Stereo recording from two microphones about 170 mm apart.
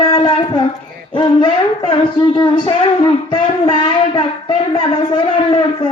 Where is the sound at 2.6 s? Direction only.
30° left (ahead or behind).